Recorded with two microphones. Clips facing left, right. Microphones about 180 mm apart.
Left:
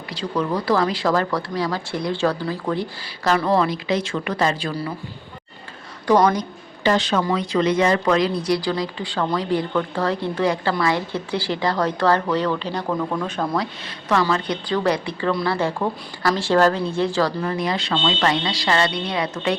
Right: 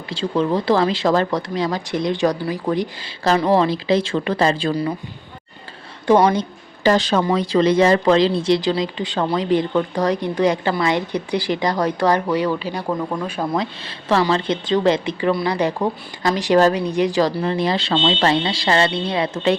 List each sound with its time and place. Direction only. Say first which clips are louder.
0.1 s speech: right 4 dB; 25° right (ahead or behind)
3.2 s a woman's voice: right 3 dB; 35° right (ahead or behind)
4.7 s a woman's voice: right 6 dB; 15° right (ahead or behind)
6.1 s speech: right 2 dB; 25° right (ahead or behind)
6.8 s a woman's voice: right 3 dB; 35° right (ahead or behind); by 13.5 s 10° right (ahead or behind)
13.5 s a woman's voice: right 2 dB; 25° right (ahead or behind)
17.4 s speech: right 3 dB; 30° right (ahead or behind)